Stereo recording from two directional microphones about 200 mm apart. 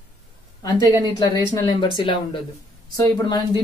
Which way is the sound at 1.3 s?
20° left (ahead or behind).